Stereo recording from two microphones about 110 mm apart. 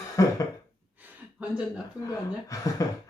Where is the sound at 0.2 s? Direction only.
30° left (ahead or behind).